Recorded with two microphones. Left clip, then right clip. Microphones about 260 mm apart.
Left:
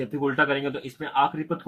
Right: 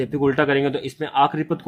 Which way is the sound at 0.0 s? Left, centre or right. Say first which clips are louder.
Right 4 dB; right.